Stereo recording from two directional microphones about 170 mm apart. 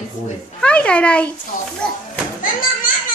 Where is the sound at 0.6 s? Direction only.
5° left (ahead or behind).